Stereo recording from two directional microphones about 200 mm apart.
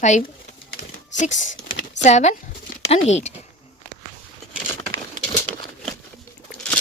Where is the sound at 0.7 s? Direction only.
40° left (ahead or behind).